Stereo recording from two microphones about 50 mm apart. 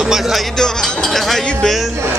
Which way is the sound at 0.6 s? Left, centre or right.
Centre.